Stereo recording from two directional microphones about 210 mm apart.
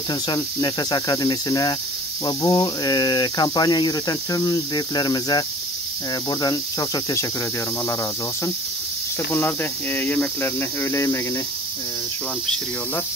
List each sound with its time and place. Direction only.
0.1 s speech: 20° left (ahead or behind)
6.4 s cricket: 15° left (ahead or behind)
9.3 s cricket: 10° left (ahead or behind)